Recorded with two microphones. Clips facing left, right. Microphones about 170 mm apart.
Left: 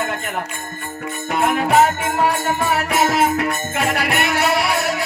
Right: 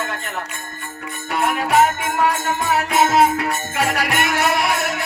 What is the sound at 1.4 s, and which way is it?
Music, 40° left (ahead or behind).